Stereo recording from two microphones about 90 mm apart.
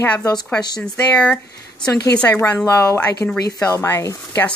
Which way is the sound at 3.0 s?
15° left (ahead or behind).